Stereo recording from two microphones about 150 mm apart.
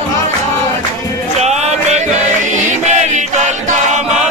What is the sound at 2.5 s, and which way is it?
Choir, 55° right (ahead or behind).